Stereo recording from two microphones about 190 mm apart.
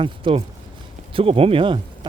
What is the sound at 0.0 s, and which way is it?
Speech, 25° right (ahead or behind).